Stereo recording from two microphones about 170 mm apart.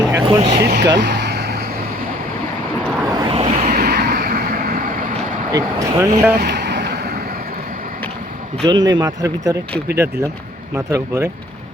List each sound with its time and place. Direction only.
0.1 s vehicle: 25° right (ahead or behind)
0.6 s vehicle: 75° right (ahead or behind)
3.1 s vehicle: 30° right (ahead or behind)
3.7 s vehicle: 65° right (ahead or behind)
5.5 s speech: 20° right (ahead or behind)
6.3 s vehicle: 75° right (ahead or behind)
8.6 s speech: 25° right (ahead or behind)
10.8 s speech: 15° right (ahead or behind)